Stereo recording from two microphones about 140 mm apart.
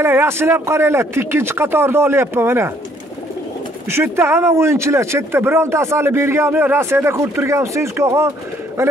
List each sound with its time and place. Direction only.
0.0 s a man's voice: 15° right (ahead or behind)
3.9 s speech: 20° right (ahead or behind)